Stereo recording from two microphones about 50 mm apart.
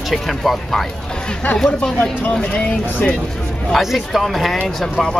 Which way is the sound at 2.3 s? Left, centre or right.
Left.